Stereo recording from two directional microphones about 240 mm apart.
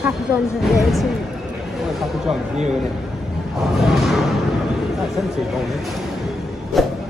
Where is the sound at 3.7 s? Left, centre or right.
Centre.